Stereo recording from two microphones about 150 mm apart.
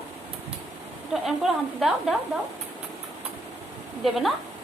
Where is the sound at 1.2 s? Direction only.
Centre (ahead or behind).